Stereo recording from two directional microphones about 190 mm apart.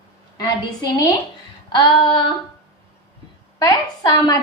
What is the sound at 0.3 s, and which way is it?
A woman's voice, 20° left (ahead or behind).